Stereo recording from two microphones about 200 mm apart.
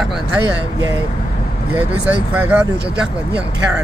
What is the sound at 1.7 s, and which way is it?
Speech, 10° right (ahead or behind).